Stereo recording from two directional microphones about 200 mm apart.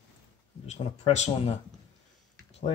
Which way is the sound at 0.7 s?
35° left (ahead or behind).